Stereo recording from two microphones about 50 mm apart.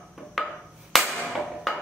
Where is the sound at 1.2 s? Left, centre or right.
Centre.